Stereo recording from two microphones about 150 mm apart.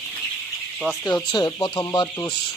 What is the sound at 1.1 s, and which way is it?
Speech, 30° left (ahead or behind).